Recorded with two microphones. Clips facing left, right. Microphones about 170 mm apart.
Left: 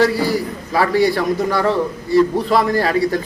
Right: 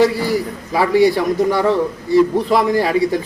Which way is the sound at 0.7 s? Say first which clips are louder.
Right 2 dB; 15° right (ahead or behind).